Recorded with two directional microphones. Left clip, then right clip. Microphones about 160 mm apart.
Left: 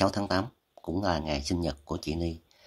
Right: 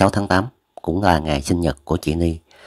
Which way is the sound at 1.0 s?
45° right (ahead or behind).